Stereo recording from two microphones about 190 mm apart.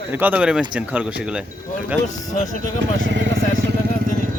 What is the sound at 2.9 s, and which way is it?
Speech, 75° right (ahead or behind).